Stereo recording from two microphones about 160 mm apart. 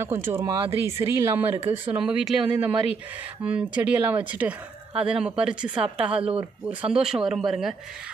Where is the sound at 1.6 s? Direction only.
35° right (ahead or behind).